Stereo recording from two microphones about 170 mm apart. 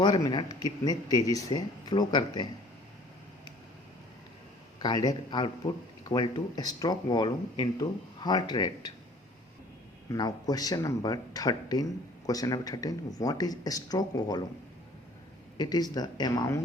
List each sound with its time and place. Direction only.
0.0 s speech: 25° left (ahead or behind)
4.8 s speech: 25° left (ahead or behind)
10.1 s speech: 20° left (ahead or behind)
15.5 s speech: 25° left (ahead or behind)